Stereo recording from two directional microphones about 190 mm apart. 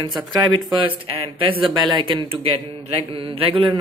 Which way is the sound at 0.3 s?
20° right (ahead or behind).